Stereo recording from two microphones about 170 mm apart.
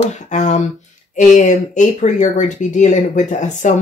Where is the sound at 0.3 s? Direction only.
45° left (ahead or behind).